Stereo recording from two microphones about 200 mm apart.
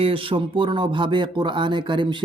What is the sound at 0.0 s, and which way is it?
A woman's voice, 25° right (ahead or behind).